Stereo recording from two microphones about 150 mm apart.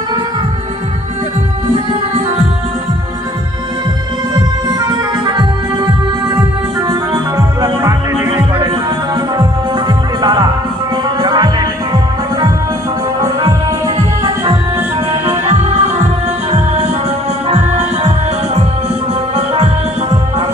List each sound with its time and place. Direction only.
4.6 s music: 25° right (ahead or behind)
15.4 s music: 45° right (ahead or behind)
17.5 s music: 45° right (ahead or behind)